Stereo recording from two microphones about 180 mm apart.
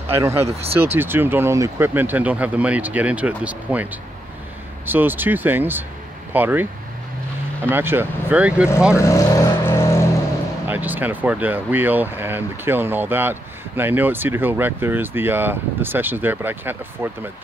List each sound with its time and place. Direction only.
0.1 s speech: 15° right (ahead or behind)
0.5 s speech: 35° right (ahead or behind)
0.7 s speech: 10° right (ahead or behind)
8.9 s vehicle: 15° left (ahead or behind)
10.7 s speech: 10° right (ahead or behind)